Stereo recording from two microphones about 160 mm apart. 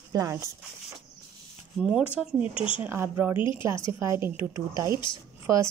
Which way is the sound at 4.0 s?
15° right (ahead or behind).